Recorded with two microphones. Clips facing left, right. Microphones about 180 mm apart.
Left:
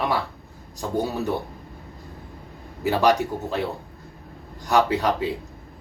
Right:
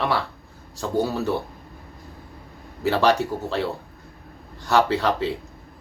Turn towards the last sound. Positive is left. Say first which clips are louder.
# even
turn(degrees=15)  # may be behind; listen again after turning